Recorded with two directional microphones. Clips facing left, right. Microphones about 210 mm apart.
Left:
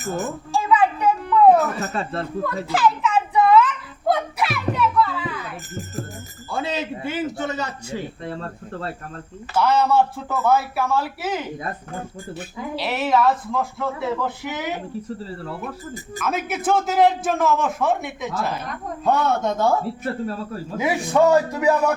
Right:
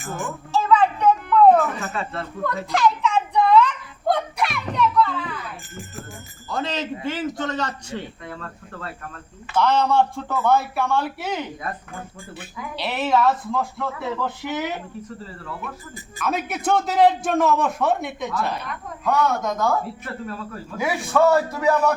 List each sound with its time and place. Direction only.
0.0 s speech: 40° left (ahead or behind)
0.5 s a sound: 10° left (ahead or behind)
1.8 s speech: 35° left (ahead or behind)
2.6 s a sound: 5° left (ahead or behind)
6.5 s speech: 10° left (ahead or behind)
8.2 s speech: 30° left (ahead or behind)
9.6 s a man's voice: 5° left (ahead or behind)
11.9 s speech: 40° left (ahead or behind)
12.7 s a man's voice: centre (ahead or behind)
15.2 s speech: 35° left (ahead or behind)
16.2 s a man's voice: centre (ahead or behind)
19.0 s a man's voice: 30° left (ahead or behind)
20.7 s speech: 20° left (ahead or behind)